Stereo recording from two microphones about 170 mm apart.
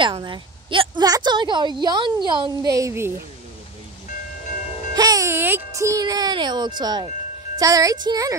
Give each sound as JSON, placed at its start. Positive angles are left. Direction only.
{"t": 0.0, "sound": "a woman's voice", "side_deg": -25}
{"t": 4.9, "sound": "a woman's voice", "side_deg": -20}